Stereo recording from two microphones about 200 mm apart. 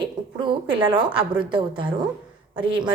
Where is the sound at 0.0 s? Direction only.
25° right (ahead or behind).